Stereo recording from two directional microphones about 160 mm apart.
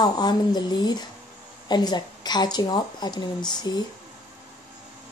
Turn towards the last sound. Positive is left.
turn(degrees=25)  # may be behind; listen again after turning